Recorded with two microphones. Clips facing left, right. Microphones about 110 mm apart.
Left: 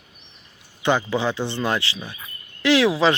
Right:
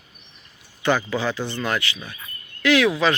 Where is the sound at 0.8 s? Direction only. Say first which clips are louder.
Left 1 dB; 20° left (ahead or behind).